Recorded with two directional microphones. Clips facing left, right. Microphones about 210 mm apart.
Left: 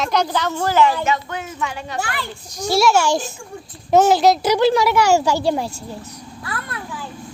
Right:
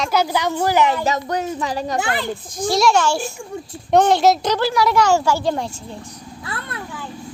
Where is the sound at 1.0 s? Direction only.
40° right (ahead or behind).